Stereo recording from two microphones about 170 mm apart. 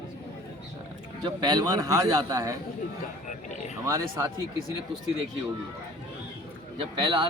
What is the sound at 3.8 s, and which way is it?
Speech, 20° right (ahead or behind).